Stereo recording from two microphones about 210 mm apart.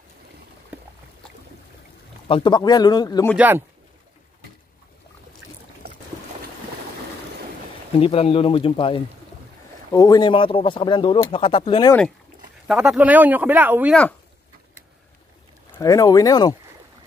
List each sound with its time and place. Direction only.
0.7 s a sound: 10° right (ahead or behind)
2.2 s speech: 25° left (ahead or behind)
3.3 s speech: 10° right (ahead or behind)
8.0 s speech: 25° left (ahead or behind)
12.6 s speech: 5° right (ahead or behind)
15.7 s speech: 15° left (ahead or behind)